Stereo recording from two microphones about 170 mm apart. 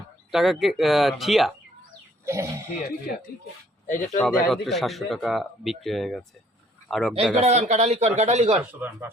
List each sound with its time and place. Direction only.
0.3 s speech: centre (ahead or behind)
2.2 s speech: 15° right (ahead or behind)
3.8 s speech: 50° left (ahead or behind)
4.2 s a man's voice: centre (ahead or behind)
7.3 s speech: 40° right (ahead or behind)